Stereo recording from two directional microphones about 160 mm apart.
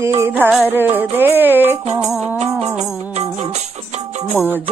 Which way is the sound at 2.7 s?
45° right (ahead or behind).